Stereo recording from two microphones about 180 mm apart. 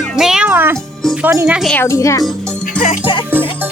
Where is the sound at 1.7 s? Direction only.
15° left (ahead or behind).